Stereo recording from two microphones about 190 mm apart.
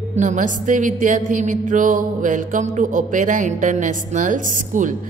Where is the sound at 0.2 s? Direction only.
40° right (ahead or behind).